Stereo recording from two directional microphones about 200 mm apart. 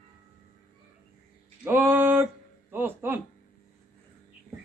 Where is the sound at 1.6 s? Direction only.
10° right (ahead or behind).